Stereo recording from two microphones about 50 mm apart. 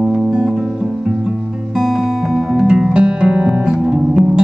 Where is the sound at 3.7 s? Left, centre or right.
Centre.